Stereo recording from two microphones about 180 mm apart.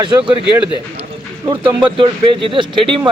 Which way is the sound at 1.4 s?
25° right (ahead or behind).